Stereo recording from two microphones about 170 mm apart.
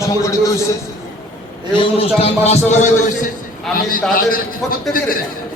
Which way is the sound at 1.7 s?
35° left (ahead or behind).